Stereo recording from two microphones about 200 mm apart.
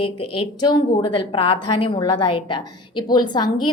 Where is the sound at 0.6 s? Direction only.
20° left (ahead or behind).